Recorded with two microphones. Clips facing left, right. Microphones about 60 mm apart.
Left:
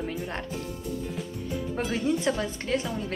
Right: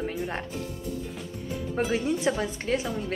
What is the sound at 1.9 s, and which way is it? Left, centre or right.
Speech, centre.